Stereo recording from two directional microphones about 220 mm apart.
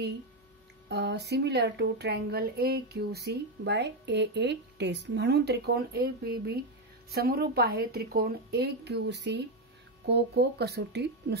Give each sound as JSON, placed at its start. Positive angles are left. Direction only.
{"t": 0.8, "sound": "speech", "side_deg": -50}